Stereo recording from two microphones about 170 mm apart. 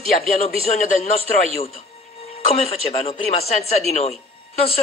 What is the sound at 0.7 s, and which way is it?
Speech, 40° left (ahead or behind).